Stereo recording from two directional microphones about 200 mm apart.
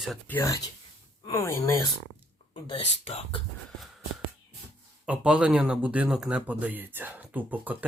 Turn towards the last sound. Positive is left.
turn(degrees=-10)  # may be behind; listen again after turning